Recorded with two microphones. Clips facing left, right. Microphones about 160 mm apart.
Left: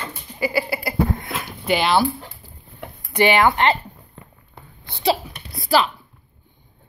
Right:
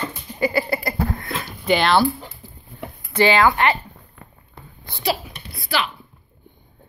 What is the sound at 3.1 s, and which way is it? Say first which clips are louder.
Speech: even; 15° left (ahead or behind).